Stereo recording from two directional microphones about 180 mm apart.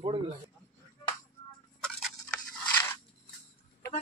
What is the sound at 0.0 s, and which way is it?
Speech, 30° right (ahead or behind).